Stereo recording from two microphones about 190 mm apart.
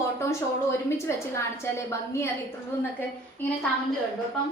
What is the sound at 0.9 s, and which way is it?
A woman's voice, 15° left (ahead or behind).